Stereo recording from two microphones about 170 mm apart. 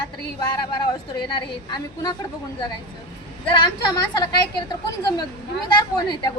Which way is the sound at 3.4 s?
25° left (ahead or behind).